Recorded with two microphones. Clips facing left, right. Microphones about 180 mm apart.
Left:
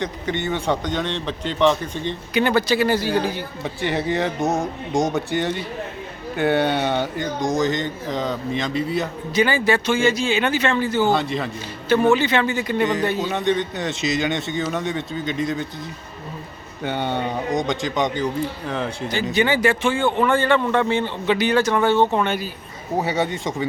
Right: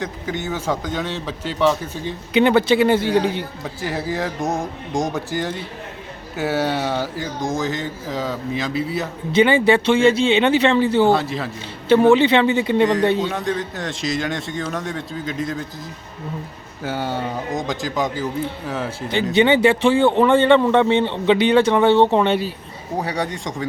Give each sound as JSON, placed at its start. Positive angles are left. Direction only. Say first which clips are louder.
{"t": 0.0, "sound": "speech", "louder": "left 1 dB", "side_deg": 0}
{"t": 2.3, "sound": "a man's voice", "louder": "right 4 dB", "side_deg": -20}
{"t": 3.6, "sound": "speech", "louder": "left 2 dB", "side_deg": 0}
{"t": 9.3, "sound": "a man's voice", "louder": "right 5 dB", "side_deg": -25}
{"t": 11.1, "sound": "speech", "louder": "right 2 dB", "side_deg": 0}
{"t": 12.1, "sound": "a man's voice", "louder": "right 5 dB", "side_deg": -20}
{"t": 12.8, "sound": "speech", "louder": "right 3 dB", "side_deg": 0}
{"t": 16.8, "sound": "speech", "louder": "left 1 dB", "side_deg": -5}
{"t": 19.3, "sound": "a man's voice", "louder": "right 5 dB", "side_deg": -25}
{"t": 23.0, "sound": "speech", "louder": "left 2 dB", "side_deg": 0}